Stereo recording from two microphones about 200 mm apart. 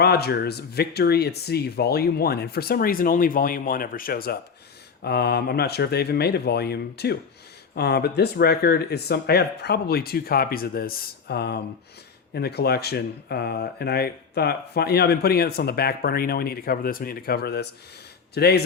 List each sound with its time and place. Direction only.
0.0 s speech: 55° left (ahead or behind)